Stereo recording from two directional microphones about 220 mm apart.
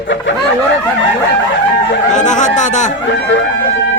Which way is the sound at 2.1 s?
35° left (ahead or behind).